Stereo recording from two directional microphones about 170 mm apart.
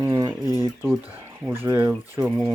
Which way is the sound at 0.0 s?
20° right (ahead or behind).